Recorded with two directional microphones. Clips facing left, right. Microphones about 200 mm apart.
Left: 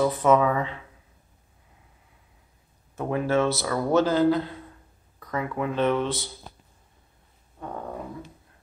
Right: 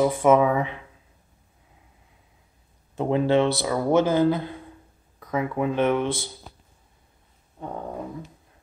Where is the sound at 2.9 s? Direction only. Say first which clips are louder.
Right 4 dB; 25° right (ahead or behind).